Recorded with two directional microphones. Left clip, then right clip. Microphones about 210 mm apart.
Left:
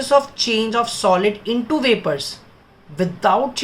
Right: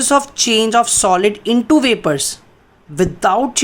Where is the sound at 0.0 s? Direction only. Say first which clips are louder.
Right 2 dB; 55° right (ahead or behind).